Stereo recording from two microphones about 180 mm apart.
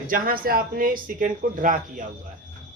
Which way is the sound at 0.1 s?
55° right (ahead or behind).